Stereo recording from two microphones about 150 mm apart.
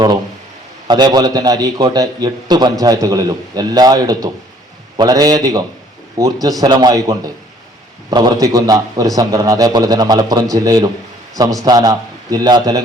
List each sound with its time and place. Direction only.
0.9 s a man's voice: 30° right (ahead or behind)